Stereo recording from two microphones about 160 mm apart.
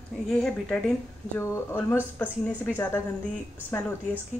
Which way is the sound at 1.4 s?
15° left (ahead or behind).